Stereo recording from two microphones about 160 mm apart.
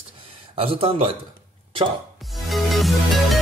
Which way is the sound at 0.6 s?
35° right (ahead or behind).